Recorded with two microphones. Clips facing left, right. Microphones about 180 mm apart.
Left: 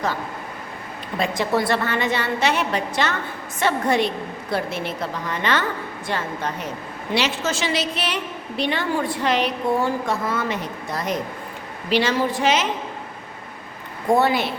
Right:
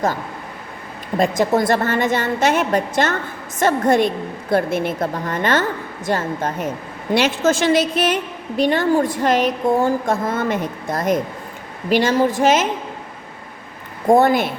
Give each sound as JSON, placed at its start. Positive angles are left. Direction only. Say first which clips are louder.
{"t": 1.2, "sound": "a woman's voice", "louder": "right 5 dB", "side_deg": -45}
{"t": 14.1, "sound": "a woman's voice", "louder": "right 5 dB", "side_deg": -50}